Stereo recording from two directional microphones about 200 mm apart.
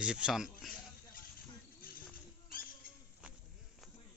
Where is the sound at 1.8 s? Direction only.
45° left (ahead or behind).